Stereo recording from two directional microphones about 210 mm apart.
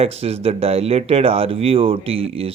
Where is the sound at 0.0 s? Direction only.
30° right (ahead or behind).